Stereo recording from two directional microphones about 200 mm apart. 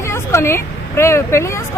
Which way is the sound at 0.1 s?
15° left (ahead or behind).